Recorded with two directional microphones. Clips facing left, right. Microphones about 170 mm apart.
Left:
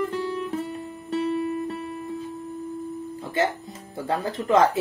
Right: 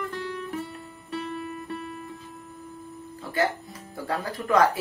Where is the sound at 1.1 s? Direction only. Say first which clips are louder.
Left 8 dB; 35° left (ahead or behind).